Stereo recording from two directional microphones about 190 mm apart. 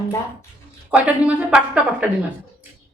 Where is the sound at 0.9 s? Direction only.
5° right (ahead or behind).